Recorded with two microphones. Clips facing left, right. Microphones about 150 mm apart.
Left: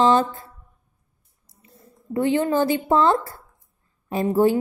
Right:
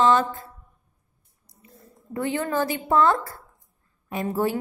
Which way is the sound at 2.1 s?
25° left (ahead or behind).